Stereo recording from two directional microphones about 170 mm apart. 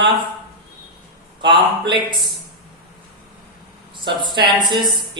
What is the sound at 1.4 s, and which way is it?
Speech, 25° right (ahead or behind).